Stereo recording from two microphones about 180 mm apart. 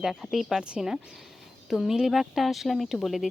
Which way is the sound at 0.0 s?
Centre (ahead or behind).